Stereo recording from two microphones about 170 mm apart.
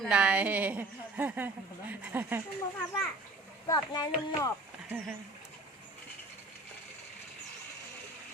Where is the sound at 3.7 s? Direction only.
20° left (ahead or behind).